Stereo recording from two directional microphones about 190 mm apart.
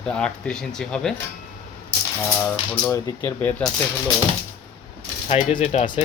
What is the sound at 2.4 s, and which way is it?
Speech, 10° left (ahead or behind).